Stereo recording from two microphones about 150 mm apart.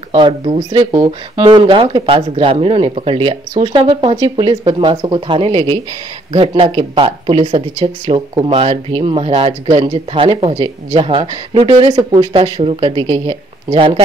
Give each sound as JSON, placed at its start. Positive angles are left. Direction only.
{"t": 0.1, "sound": "speech", "side_deg": -35}